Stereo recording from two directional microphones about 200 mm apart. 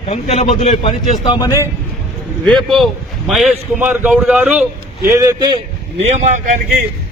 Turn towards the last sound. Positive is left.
turn(degrees=-40)  # may be behind; listen again after turning